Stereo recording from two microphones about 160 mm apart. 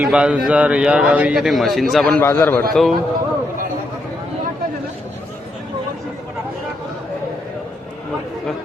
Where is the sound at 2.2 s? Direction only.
15° left (ahead or behind).